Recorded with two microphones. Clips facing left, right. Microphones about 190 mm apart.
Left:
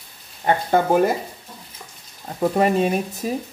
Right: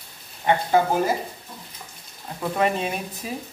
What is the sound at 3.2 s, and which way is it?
Speech, 45° left (ahead or behind).